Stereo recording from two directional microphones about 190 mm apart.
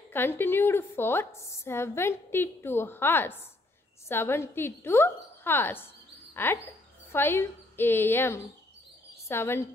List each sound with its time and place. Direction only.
0.1 s a woman's voice: 10° left (ahead or behind)